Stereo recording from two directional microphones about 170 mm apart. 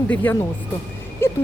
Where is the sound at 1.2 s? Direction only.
15° left (ahead or behind).